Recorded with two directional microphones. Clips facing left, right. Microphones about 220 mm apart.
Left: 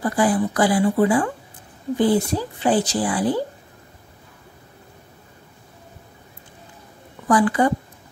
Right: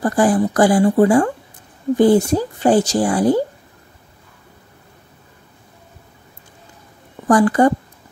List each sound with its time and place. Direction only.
0.0 s speech: 45° right (ahead or behind)
7.2 s speech: 45° right (ahead or behind)